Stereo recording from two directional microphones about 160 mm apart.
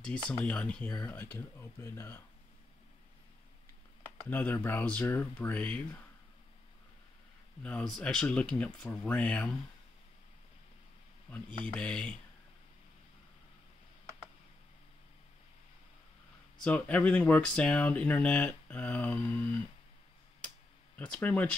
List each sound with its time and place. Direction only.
0.0 s speech: 5° left (ahead or behind)
4.2 s speech: 10° left (ahead or behind)
7.6 s speech: 5° left (ahead or behind)
11.6 s speech: 5° left (ahead or behind)
16.5 s speech: 5° left (ahead or behind)
20.4 s a sound: 5° left (ahead or behind)